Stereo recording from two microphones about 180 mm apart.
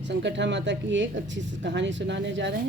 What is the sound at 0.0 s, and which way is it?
Speech, 75° right (ahead or behind).